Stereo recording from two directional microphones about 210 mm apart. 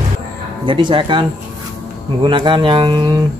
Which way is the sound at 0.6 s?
25° right (ahead or behind).